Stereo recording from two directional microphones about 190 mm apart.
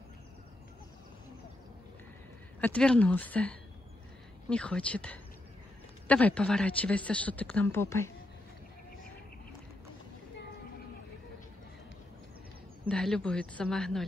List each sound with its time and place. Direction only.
2.6 s a woman's voice: 5° left (ahead or behind)
12.8 s a woman's voice: 5° left (ahead or behind)